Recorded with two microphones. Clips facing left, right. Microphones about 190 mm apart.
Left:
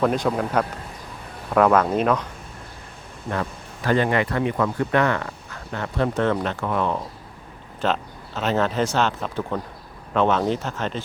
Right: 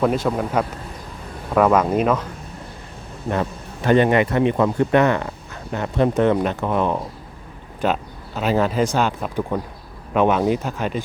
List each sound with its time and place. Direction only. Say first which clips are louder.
0.0 s speech: right 1 dB; centre (ahead or behind)
3.2 s speech: right 4 dB; 20° right (ahead or behind)